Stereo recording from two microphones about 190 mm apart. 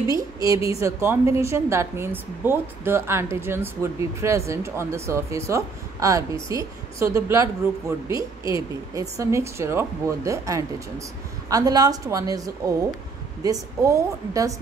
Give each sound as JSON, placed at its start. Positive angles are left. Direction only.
{"t": 0.0, "sound": "a woman's voice", "side_deg": -20}